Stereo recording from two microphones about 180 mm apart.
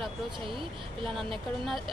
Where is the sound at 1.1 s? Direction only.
Centre (ahead or behind).